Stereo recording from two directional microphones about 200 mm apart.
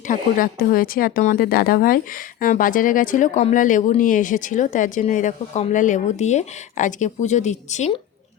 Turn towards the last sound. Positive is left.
turn(degrees=35)  # may be behind; listen again after turning